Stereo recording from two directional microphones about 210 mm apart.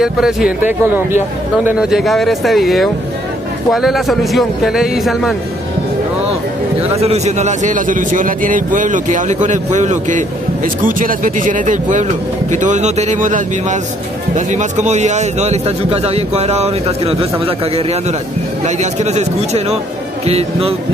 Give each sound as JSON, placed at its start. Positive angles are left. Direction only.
{"t": 0.0, "sound": "a man's voice", "side_deg": -5}
{"t": 7.0, "sound": "speech", "side_deg": -30}